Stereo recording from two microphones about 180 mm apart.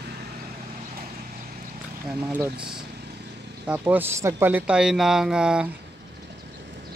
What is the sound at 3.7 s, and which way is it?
Speech, 10° right (ahead or behind).